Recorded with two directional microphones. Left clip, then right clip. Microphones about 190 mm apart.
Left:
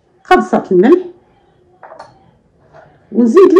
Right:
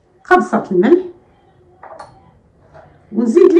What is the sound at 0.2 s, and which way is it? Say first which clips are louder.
Speech: left 2 dB; 55° left (ahead or behind).